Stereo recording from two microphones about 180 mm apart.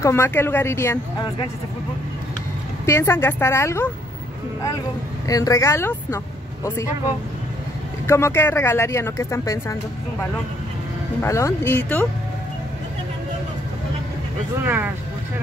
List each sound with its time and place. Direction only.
0.0 s speech: 15° left (ahead or behind)
2.9 s speech: 15° left (ahead or behind)
5.3 s speech: 20° left (ahead or behind)
8.1 s speech: 15° left (ahead or behind)
11.2 s speech: 15° left (ahead or behind)
14.6 s speech: 10° right (ahead or behind)